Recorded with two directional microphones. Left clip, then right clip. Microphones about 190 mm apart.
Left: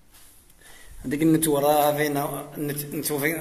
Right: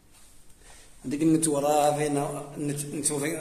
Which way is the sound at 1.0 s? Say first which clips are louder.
Left 3 dB; 25° left (ahead or behind).